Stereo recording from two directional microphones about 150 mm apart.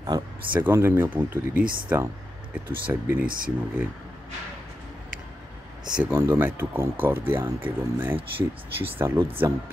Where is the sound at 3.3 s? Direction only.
70° right (ahead or behind).